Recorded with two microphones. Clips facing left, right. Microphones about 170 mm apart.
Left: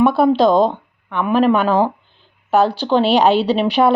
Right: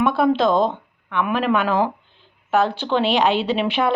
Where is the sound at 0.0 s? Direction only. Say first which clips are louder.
Left 5 dB; 35° left (ahead or behind).